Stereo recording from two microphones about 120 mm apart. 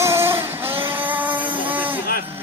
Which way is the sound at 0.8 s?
15° right (ahead or behind).